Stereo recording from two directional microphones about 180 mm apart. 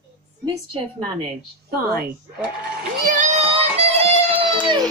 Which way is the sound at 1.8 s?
55° right (ahead or behind).